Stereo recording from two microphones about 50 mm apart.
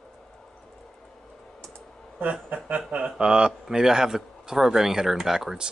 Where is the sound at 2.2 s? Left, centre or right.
Right.